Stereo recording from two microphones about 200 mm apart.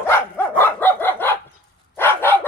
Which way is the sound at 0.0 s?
10° left (ahead or behind).